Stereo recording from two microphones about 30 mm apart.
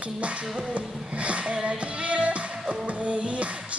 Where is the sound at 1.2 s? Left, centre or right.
Right.